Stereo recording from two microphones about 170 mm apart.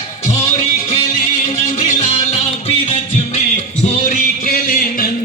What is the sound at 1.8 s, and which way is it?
Music, 35° left (ahead or behind).